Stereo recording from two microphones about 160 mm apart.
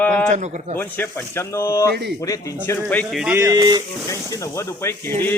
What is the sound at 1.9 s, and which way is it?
Speech, 85° right.